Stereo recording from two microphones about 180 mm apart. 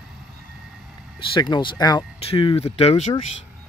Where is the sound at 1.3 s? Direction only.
25° left (ahead or behind).